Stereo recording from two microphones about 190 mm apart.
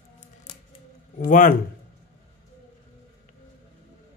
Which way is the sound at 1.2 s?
45° left (ahead or behind).